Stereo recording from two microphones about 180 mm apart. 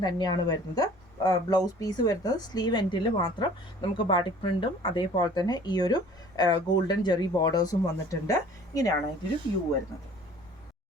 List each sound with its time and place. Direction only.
0.0 s speech: 20° left (ahead or behind)